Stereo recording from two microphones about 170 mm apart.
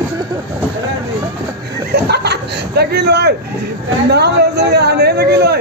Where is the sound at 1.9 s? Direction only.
75° right (ahead or behind).